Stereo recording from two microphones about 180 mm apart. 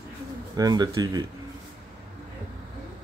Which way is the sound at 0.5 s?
20° right (ahead or behind).